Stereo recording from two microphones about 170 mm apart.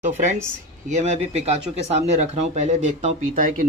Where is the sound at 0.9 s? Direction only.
40° right (ahead or behind).